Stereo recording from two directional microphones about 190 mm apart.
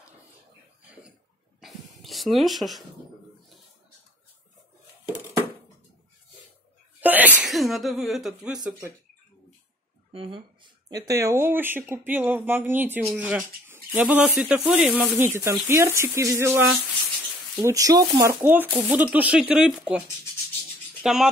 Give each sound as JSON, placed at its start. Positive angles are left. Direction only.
{"t": 1.6, "sound": "a sound", "side_deg": 0}
{"t": 7.0, "sound": "sneeze", "side_deg": -10}
{"t": 10.1, "sound": "speech", "side_deg": -30}
{"t": 21.0, "sound": "speech", "side_deg": -5}